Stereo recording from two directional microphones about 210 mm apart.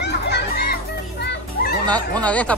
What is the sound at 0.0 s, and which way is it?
Music, 55° left (ahead or behind).